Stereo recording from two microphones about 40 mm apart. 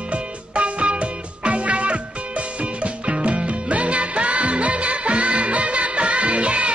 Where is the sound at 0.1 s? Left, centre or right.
Right.